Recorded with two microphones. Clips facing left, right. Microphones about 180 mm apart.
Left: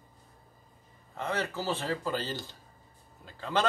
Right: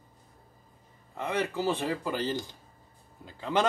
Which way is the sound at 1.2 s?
15° right (ahead or behind).